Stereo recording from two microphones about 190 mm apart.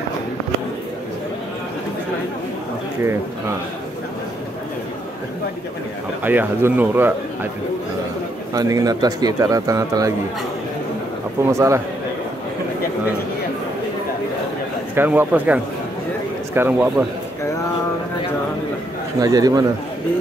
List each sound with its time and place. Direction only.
6.2 s a man's voice: 10° right (ahead or behind)
8.5 s a man's voice: 20° right (ahead or behind)
11.4 s a man's voice: 15° right (ahead or behind)
15.0 s a man's voice: 10° right (ahead or behind)
19.1 s a man's voice: 20° right (ahead or behind)